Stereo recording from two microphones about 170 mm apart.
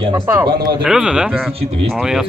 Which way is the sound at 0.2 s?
15° right (ahead or behind).